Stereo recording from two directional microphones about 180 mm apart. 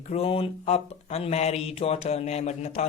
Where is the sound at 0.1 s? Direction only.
35° left (ahead or behind).